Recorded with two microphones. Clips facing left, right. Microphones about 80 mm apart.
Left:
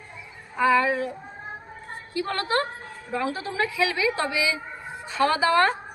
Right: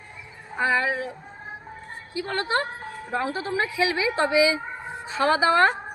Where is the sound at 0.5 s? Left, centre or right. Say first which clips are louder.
Left 3 dB; right.